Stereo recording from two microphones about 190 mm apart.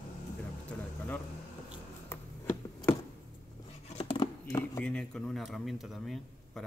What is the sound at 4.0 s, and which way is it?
Scissors, 30° left (ahead or behind).